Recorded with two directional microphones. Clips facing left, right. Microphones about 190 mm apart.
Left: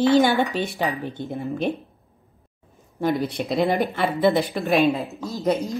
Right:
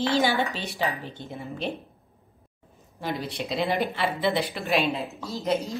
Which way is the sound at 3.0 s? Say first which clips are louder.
Left 8 dB; 50° left (ahead or behind).